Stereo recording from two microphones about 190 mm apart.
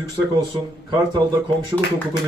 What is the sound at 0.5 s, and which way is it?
Speech, 20° right (ahead or behind).